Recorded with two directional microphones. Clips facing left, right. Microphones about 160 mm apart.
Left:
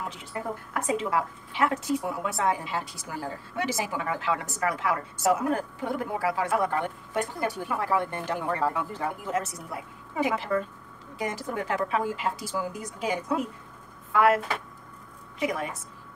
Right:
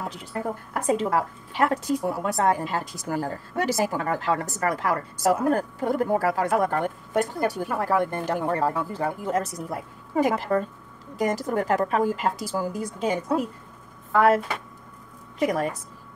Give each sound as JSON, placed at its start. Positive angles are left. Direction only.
{"t": 0.7, "sound": "a woman's voice", "side_deg": -35}
{"t": 14.1, "sound": "speech", "side_deg": -30}
{"t": 15.3, "sound": "a woman's voice", "side_deg": -40}